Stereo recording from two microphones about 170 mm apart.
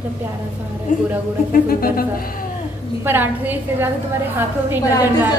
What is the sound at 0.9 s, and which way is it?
A woman's voice, 50° left (ahead or behind).